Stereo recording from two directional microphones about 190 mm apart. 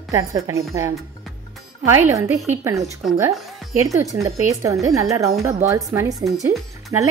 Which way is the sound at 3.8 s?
15° right (ahead or behind).